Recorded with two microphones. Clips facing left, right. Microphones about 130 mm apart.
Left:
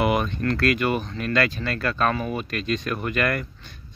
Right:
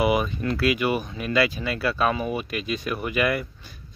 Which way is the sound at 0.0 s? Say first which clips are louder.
Even; 5° right (ahead or behind).